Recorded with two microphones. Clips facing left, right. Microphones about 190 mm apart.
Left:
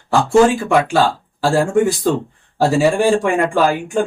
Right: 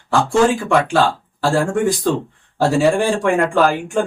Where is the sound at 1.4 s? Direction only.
5° left (ahead or behind).